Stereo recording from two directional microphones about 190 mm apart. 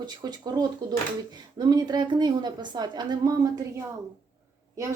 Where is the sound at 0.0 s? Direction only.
20° right (ahead or behind).